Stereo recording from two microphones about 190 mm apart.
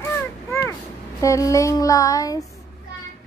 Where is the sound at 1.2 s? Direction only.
15° left (ahead or behind).